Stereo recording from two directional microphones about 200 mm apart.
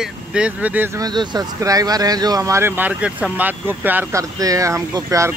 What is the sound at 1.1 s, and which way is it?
Speech, 20° right (ahead or behind).